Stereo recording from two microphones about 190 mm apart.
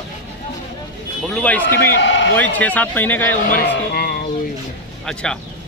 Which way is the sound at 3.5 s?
50° left (ahead or behind).